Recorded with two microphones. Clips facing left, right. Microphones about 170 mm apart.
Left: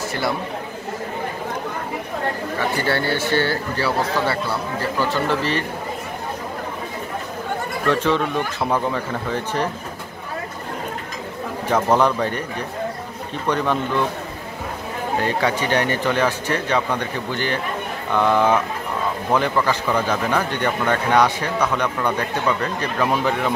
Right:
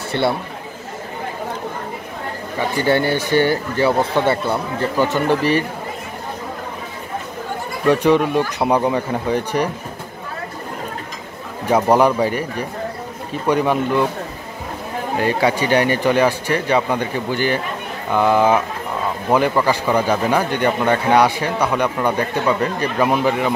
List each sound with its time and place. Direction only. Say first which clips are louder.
2.8 s speech: right 7 dB; 15° right (ahead or behind)
7.8 s speech: right 6 dB; 15° right (ahead or behind)
11.7 s speech: right 4 dB; 10° right (ahead or behind)
13.5 s speech: right 4 dB; 10° right (ahead or behind)
15.4 s speech: right 6 dB; 10° right (ahead or behind)